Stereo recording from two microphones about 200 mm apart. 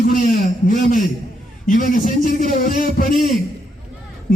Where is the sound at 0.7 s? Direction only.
40° left (ahead or behind).